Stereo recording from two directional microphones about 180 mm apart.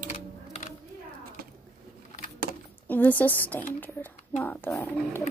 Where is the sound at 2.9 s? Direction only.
10° left (ahead or behind).